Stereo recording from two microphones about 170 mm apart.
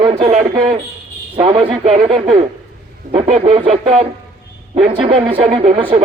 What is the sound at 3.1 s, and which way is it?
Speech, 35° right (ahead or behind).